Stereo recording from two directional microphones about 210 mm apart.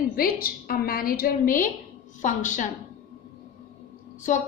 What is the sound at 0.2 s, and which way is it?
A woman's voice, 45° left (ahead or behind).